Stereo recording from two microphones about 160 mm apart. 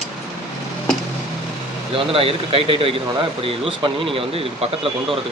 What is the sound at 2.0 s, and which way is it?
Speech, 35° right (ahead or behind).